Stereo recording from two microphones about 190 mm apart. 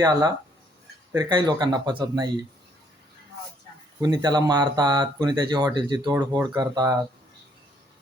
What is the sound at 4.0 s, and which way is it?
Speech, 20° right (ahead or behind).